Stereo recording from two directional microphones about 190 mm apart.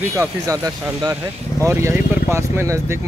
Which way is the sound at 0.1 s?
15° right (ahead or behind).